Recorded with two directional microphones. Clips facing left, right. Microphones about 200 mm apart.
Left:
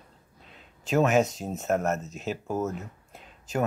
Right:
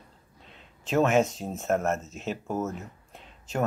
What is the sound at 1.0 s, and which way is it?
Speech, centre (ahead or behind).